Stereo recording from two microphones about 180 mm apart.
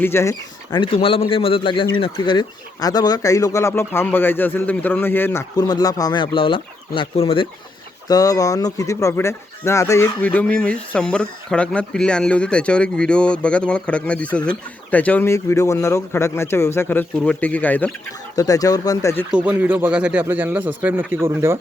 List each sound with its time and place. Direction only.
0.0 s speech: 15° left (ahead or behind)
18.3 s speech: 20° left (ahead or behind)
19.3 s speech: 10° right (ahead or behind)